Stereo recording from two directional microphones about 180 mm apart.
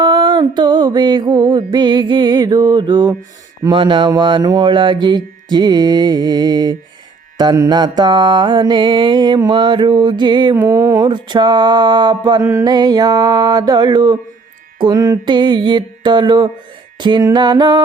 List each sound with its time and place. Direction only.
0.0 s mantra: 25° right (ahead or behind)